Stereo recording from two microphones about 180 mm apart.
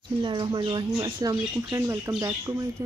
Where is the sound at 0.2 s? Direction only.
25° right (ahead or behind).